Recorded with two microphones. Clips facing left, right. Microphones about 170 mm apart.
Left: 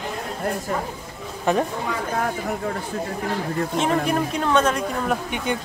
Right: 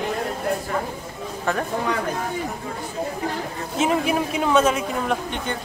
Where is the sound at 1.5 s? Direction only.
15° left (ahead or behind).